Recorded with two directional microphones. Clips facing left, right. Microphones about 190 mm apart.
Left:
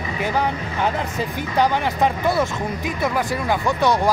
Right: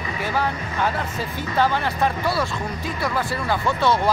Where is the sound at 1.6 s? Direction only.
20° left (ahead or behind).